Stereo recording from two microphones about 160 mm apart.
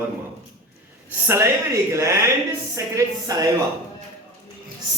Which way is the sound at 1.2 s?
15° right (ahead or behind).